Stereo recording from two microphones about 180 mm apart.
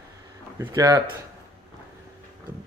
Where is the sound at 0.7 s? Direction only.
25° right (ahead or behind).